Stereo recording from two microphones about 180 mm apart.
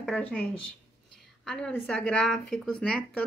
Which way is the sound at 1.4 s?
5° left (ahead or behind).